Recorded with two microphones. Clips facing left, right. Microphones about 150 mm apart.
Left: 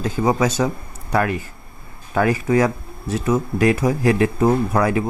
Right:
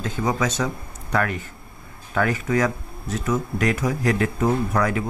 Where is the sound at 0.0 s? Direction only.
30° left (ahead or behind).